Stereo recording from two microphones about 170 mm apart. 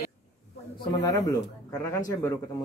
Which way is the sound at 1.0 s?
20° left (ahead or behind).